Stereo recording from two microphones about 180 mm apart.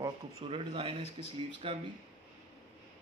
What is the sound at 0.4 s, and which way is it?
Speech, 30° right (ahead or behind).